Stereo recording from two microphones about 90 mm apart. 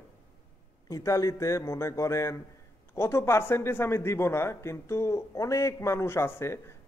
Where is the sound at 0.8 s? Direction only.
35° left (ahead or behind).